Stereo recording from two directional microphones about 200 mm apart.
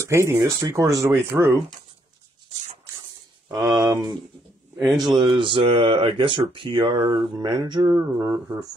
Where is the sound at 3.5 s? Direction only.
20° right (ahead or behind).